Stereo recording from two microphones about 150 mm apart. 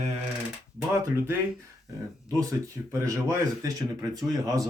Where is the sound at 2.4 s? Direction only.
20° right (ahead or behind).